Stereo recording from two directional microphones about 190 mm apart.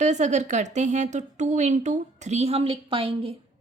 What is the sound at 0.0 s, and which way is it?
A woman's voice, 40° right (ahead or behind).